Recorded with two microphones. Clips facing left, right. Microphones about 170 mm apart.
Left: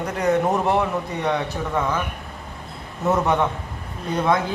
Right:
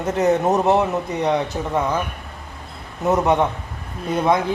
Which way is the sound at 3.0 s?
20° right (ahead or behind).